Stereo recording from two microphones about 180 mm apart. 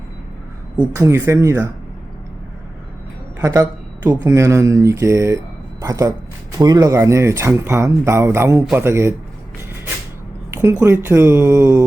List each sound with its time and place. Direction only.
0.9 s speech: 15° right (ahead or behind)
3.4 s speech: 15° right (ahead or behind)
10.5 s speech: 15° right (ahead or behind)